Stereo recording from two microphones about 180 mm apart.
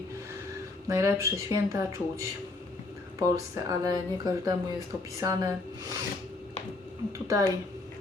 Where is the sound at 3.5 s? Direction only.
20° right (ahead or behind).